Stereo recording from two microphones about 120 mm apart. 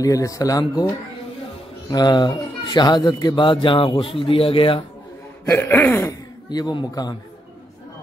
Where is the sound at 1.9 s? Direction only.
35° left (ahead or behind).